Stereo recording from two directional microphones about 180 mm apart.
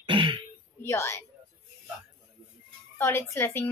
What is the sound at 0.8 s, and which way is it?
Speech, 15° left (ahead or behind).